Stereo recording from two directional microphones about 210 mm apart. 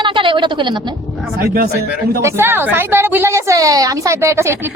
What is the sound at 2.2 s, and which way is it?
A woman's voice, 10° right (ahead or behind).